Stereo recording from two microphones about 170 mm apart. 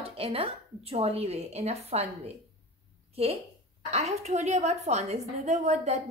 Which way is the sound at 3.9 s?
40° right (ahead or behind).